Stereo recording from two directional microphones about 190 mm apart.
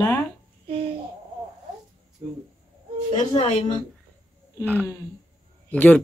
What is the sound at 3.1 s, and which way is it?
Speech, 35° left (ahead or behind).